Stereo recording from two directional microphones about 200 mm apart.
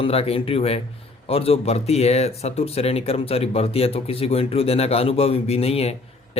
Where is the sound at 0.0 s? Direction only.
30° left (ahead or behind).